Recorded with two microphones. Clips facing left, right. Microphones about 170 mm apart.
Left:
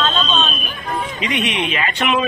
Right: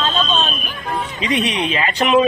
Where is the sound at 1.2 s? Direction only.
35° right (ahead or behind).